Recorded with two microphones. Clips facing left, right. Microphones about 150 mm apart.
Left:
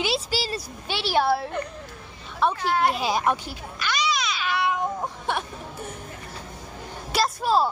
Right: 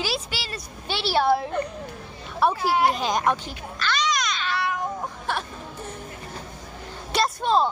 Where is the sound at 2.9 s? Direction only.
5° left (ahead or behind).